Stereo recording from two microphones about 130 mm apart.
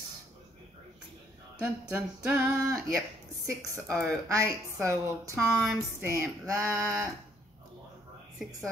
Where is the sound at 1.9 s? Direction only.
15° right (ahead or behind).